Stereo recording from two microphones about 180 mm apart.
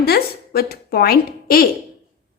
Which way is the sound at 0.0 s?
60° left (ahead or behind).